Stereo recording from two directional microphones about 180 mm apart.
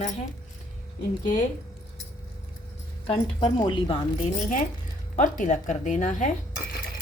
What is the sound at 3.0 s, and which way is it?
Speech, 30° left (ahead or behind).